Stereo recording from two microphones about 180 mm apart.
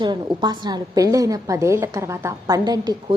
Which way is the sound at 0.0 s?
25° right (ahead or behind).